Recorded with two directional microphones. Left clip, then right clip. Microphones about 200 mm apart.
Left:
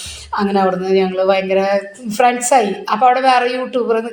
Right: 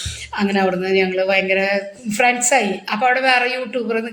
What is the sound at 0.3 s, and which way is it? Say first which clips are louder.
Speech: left 3 dB; centre (ahead or behind).